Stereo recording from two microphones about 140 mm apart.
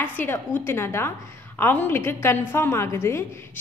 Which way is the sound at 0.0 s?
15° left (ahead or behind).